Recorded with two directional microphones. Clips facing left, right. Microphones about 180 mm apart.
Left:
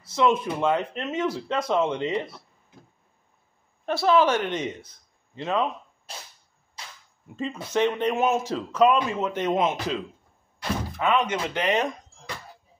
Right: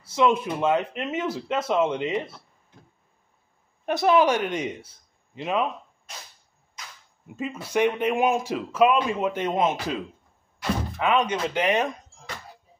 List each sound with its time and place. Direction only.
0.0 s speech: 10° right (ahead or behind)
3.8 s speech: 15° right (ahead or behind)
6.1 s a sound: 30° left (ahead or behind)
6.8 s cap gun: 30° left (ahead or behind)
7.3 s speech: 10° right (ahead or behind)
11.0 s speech: 15° right (ahead or behind)